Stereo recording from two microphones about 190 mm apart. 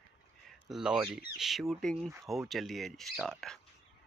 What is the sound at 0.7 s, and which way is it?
Speech, 5° right (ahead or behind).